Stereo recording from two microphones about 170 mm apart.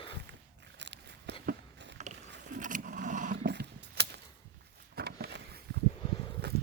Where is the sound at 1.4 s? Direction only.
90° right.